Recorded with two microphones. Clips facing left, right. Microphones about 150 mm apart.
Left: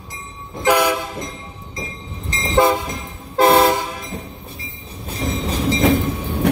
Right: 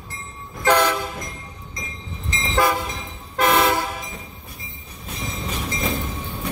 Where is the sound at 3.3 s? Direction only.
35° left (ahead or behind).